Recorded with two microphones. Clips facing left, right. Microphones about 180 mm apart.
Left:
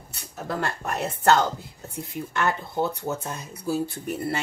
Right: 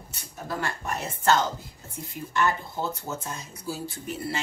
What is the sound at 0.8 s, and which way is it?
A woman's voice, 65° left (ahead or behind).